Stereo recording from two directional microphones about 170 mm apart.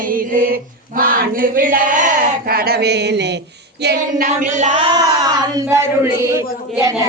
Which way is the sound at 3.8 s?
65° right (ahead or behind).